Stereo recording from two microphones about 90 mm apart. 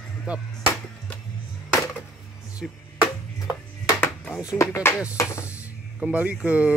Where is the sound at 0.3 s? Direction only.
10° right (ahead or behind).